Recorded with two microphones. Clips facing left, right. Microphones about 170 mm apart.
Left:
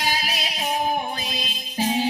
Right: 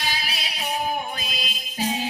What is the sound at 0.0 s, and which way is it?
Music, 45° left (ahead or behind).